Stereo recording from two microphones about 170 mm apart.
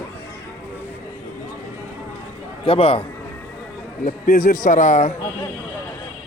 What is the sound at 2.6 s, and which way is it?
Speech, 35° left (ahead or behind).